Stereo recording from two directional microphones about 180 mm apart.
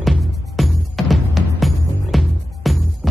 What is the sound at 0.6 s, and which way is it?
Music, centre (ahead or behind).